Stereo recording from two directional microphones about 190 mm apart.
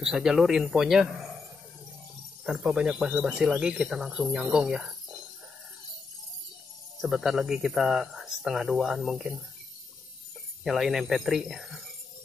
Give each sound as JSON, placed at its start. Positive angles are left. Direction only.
{"t": 0.0, "sound": "speech", "side_deg": -5}
{"t": 2.4, "sound": "speech", "side_deg": -5}
{"t": 7.0, "sound": "speech", "side_deg": 0}
{"t": 10.6, "sound": "speech", "side_deg": 0}